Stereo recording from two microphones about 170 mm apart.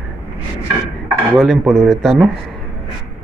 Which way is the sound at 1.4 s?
Centre (ahead or behind).